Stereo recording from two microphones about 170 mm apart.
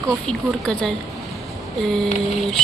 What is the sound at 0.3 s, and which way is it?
Speech, 5° left (ahead or behind).